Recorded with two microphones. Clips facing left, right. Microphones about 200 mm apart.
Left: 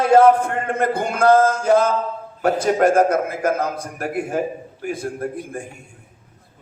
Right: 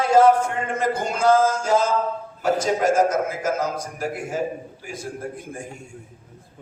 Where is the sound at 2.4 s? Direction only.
60° left (ahead or behind).